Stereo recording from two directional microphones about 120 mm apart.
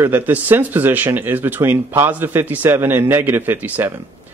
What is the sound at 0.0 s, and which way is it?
Speech, 15° right (ahead or behind).